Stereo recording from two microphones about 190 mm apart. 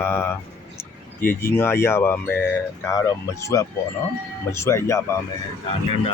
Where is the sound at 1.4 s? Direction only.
10° left (ahead or behind).